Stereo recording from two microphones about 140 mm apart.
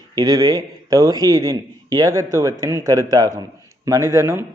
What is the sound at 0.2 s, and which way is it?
A man's voice, 25° right (ahead or behind).